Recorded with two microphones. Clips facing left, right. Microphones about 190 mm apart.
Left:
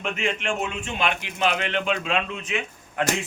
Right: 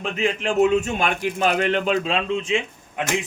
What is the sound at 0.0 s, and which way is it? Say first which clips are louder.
Speech: right 4 dB; 35° right (ahead or behind).